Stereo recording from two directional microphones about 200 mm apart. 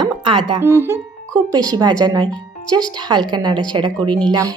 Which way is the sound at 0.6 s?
10° right (ahead or behind).